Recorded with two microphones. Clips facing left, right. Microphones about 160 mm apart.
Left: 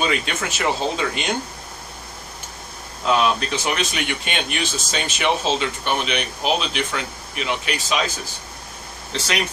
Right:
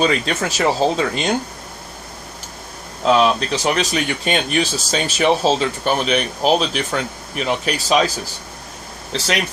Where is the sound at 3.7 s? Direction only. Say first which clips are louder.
Right 6 dB; 40° right (ahead or behind).